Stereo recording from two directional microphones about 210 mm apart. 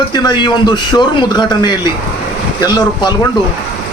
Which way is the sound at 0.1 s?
20° left (ahead or behind).